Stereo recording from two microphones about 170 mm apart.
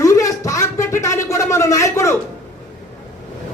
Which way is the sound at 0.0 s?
20° left (ahead or behind).